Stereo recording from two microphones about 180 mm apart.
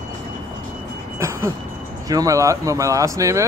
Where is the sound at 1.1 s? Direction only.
15° right (ahead or behind).